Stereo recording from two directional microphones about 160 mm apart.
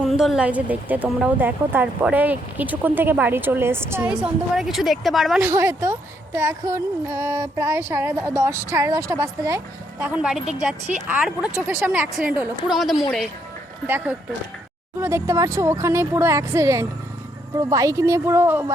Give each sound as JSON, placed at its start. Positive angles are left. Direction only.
{"t": 0.0, "sound": "speech", "side_deg": 0}
{"t": 5.4, "sound": "speech", "side_deg": -15}
{"t": 10.0, "sound": "a woman's voice", "side_deg": -5}
{"t": 13.8, "sound": "speech", "side_deg": -10}